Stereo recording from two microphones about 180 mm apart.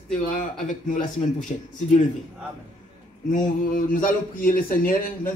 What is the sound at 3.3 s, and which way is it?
A man's voice, 50° left (ahead or behind).